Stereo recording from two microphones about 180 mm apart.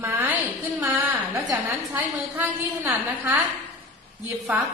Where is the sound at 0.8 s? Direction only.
15° right (ahead or behind).